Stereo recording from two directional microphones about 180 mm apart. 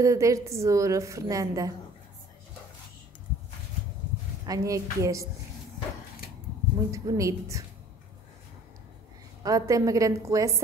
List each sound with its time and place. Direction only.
0.0 s a woman's voice: 15° right (ahead or behind)
4.5 s a woman's voice: 20° right (ahead or behind)
6.9 s a woman's voice: 20° right (ahead or behind)
9.4 s a woman's voice: 20° right (ahead or behind)